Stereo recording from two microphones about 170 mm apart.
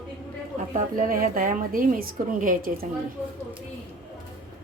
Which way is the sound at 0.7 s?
55° right (ahead or behind).